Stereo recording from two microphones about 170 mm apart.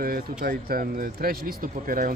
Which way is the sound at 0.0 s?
60° right (ahead or behind).